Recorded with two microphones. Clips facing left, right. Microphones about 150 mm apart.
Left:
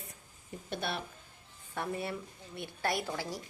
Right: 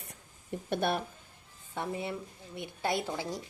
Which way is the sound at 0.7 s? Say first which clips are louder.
Right 6 dB; 50° right (ahead or behind).